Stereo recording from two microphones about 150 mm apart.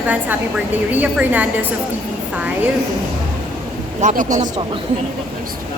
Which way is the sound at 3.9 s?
55° right (ahead or behind).